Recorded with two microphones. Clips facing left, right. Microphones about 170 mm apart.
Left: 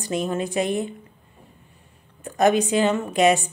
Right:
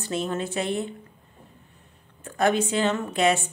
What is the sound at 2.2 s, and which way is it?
A woman's voice, 15° left (ahead or behind).